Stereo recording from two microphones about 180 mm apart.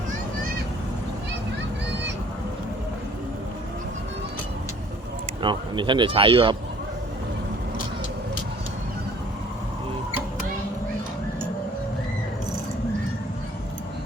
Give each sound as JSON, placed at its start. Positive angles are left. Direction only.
{"t": 5.4, "sound": "speech", "side_deg": -25}